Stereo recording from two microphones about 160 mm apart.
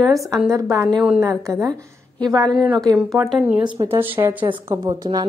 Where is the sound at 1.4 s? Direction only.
20° right (ahead or behind).